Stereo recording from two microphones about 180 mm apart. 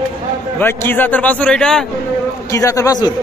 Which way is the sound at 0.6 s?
10° left (ahead or behind).